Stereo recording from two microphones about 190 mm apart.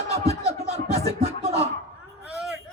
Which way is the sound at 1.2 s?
35° right (ahead or behind).